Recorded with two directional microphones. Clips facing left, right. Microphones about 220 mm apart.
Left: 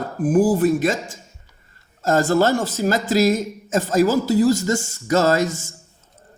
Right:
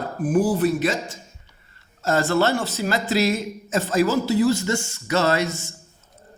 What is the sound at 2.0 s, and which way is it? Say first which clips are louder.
Speech: left 3 dB; 45° left (ahead or behind).